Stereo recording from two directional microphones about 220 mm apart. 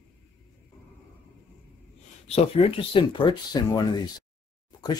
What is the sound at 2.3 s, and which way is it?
Speech, 25° left (ahead or behind).